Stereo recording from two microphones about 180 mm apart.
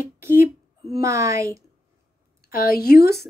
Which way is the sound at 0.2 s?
15° right (ahead or behind).